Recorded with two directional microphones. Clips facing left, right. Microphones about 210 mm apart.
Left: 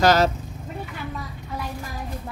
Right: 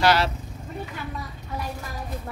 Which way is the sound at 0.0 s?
45° left (ahead or behind).